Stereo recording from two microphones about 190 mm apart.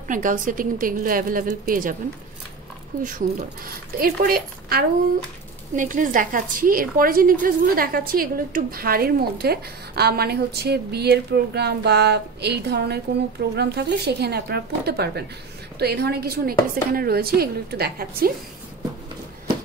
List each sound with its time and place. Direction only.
0.1 s speech: 45° right (ahead or behind)
3.0 s a woman's voice: 45° right (ahead or behind)